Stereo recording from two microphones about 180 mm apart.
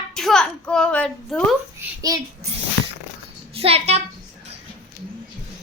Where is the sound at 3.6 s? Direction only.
35° right (ahead or behind).